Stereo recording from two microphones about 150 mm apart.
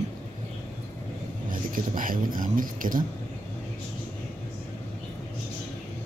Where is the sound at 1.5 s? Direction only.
65° right (ahead or behind).